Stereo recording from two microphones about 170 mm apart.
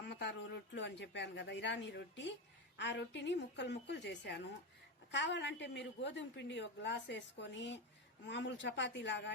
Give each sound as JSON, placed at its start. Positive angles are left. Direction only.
{"t": 0.1, "sound": "a woman's voice", "side_deg": 85}